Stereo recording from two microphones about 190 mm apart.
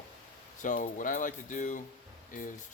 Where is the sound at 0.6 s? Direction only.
45° left (ahead or behind).